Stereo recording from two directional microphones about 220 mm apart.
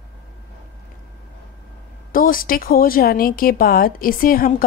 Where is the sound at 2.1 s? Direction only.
40° left (ahead or behind).